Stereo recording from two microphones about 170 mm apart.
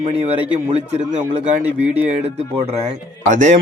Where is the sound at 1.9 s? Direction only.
40° right (ahead or behind).